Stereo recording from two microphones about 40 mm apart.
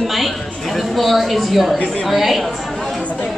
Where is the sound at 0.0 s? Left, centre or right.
Centre.